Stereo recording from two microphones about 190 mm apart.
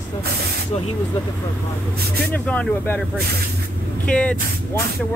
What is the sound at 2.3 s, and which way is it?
Speech, 10° left (ahead or behind).